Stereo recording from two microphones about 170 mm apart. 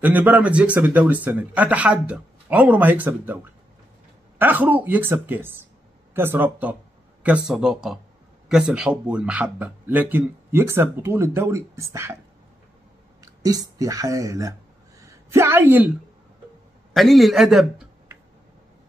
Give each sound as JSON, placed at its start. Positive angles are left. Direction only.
{"t": 0.0, "sound": "speech", "side_deg": -10}
{"t": 4.4, "sound": "speech", "side_deg": -10}
{"t": 13.2, "sound": "speech", "side_deg": -20}
{"t": 15.0, "sound": "a sound", "side_deg": -15}
{"t": 16.9, "sound": "speech", "side_deg": 0}